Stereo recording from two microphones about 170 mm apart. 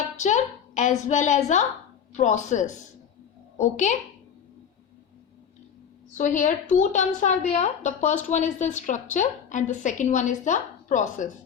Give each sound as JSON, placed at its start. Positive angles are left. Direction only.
{"t": 0.2, "sound": "a woman's voice", "side_deg": 45}
{"t": 6.1, "sound": "a woman's voice", "side_deg": 50}